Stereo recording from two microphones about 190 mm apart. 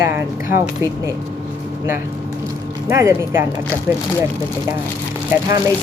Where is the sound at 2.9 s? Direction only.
15° right (ahead or behind).